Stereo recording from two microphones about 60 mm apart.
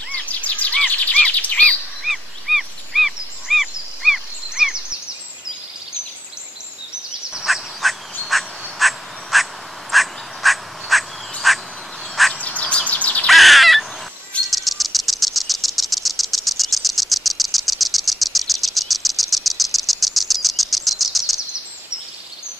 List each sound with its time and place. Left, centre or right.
0.1 s bird vocalization: left
2.0 s a sound: centre
7.3 s frog: centre
12.4 s bird: left
13.3 s bird: centre
14.5 s a sound: centre